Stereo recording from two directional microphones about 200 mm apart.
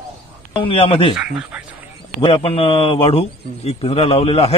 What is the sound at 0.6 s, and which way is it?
Speech, 30° left (ahead or behind).